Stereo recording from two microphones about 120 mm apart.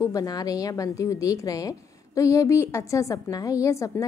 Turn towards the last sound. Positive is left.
turn(degrees=25)  # may be behind; listen again after turning